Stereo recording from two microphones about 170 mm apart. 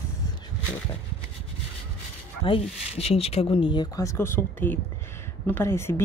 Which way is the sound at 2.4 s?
35° left (ahead or behind).